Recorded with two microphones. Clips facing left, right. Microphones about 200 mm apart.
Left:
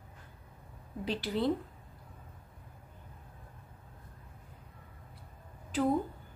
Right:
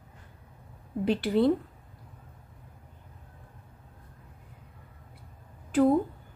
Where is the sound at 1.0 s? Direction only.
55° right (ahead or behind).